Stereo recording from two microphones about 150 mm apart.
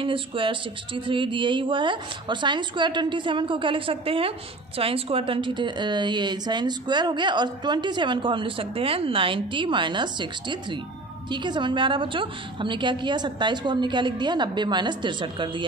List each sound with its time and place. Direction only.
0.0 s a woman's voice: 35° right (ahead or behind)